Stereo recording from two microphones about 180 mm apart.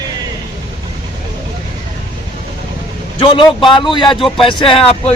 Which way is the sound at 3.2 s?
30° left (ahead or behind).